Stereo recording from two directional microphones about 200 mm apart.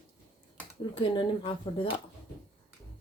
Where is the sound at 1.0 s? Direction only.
25° left (ahead or behind).